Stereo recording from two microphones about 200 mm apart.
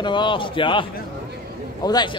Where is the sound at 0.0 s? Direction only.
25° left (ahead or behind).